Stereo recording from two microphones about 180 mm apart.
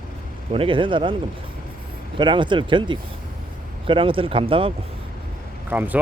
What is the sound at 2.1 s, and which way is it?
Speech, 25° right (ahead or behind).